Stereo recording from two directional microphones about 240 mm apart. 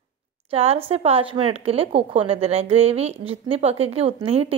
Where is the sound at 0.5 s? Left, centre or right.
Right.